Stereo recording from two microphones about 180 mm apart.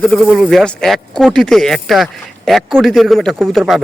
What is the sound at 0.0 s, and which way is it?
Speech, 5° left (ahead or behind).